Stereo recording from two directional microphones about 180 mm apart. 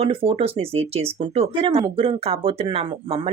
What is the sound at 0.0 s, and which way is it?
Speech, 30° right (ahead or behind).